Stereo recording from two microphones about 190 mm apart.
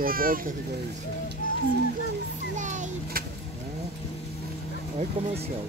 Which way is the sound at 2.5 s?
40° right (ahead or behind).